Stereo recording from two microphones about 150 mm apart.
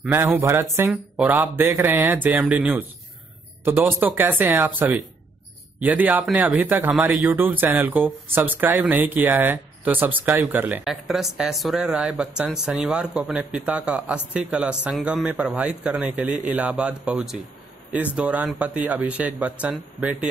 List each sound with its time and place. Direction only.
0.1 s speech: 15° right (ahead or behind)